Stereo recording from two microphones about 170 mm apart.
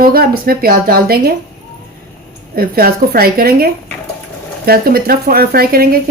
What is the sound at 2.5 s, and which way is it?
Speech, 60° right (ahead or behind).